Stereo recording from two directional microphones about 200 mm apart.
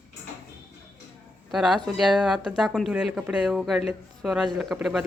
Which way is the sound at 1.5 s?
5° right (ahead or behind).